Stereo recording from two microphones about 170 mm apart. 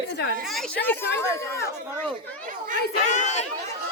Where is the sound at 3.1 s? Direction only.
45° left (ahead or behind).